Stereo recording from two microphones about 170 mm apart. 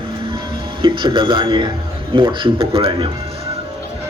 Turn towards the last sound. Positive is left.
turn(degrees=-30)  # may be behind; listen again after turning